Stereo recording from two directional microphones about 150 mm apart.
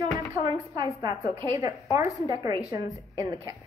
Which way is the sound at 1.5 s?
20° right (ahead or behind).